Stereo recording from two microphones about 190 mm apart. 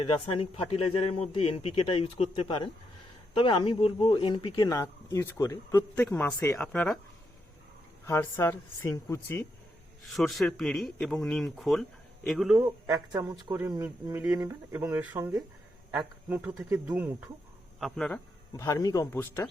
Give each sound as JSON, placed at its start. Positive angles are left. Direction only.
{"t": 0.3, "sound": "speech", "side_deg": 30}
{"t": 8.0, "sound": "speech", "side_deg": 15}
{"t": 10.1, "sound": "speech", "side_deg": 0}
{"t": 12.6, "sound": "speech", "side_deg": -20}
{"t": 17.7, "sound": "speech", "side_deg": 0}
{"t": 18.5, "sound": "speech", "side_deg": 15}